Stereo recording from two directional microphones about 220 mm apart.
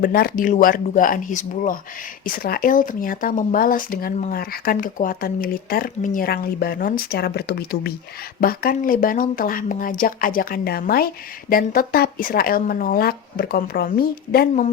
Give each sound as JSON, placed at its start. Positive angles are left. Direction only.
{"t": 0.0, "sound": "speech", "side_deg": 40}